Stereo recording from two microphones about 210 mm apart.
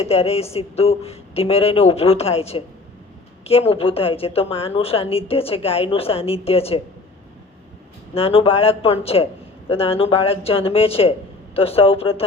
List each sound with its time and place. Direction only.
0.0 s a woman's voice: 30° left (ahead or behind)
8.1 s a woman's voice: 25° left (ahead or behind)